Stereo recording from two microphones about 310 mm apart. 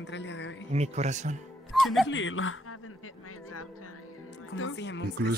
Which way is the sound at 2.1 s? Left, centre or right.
Left.